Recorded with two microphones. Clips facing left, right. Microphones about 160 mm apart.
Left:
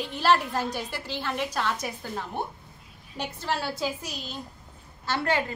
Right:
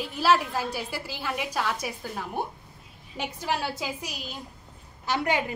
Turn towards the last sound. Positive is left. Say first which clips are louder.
# even
turn(degrees=-15)  # may be behind; listen again after turning